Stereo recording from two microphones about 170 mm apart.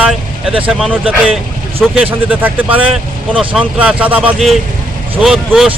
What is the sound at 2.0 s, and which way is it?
Speech, 10° right (ahead or behind).